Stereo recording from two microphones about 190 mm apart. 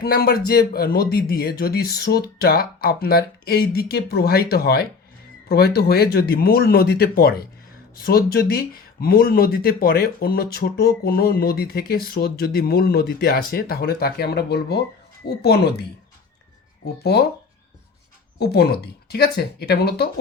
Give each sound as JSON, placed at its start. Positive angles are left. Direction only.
{"t": 0.0, "sound": "a man's voice", "side_deg": 55}
{"t": 17.0, "sound": "speech", "side_deg": 55}
{"t": 18.3, "sound": "speech", "side_deg": 55}